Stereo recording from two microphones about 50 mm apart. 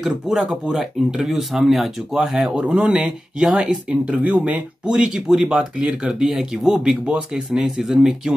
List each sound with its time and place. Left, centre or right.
0.0 s speech: centre